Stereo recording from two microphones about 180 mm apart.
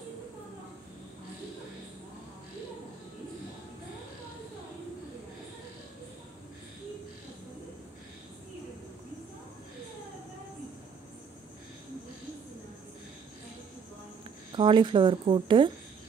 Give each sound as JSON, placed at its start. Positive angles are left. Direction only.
{"t": 14.5, "sound": "speech", "side_deg": -25}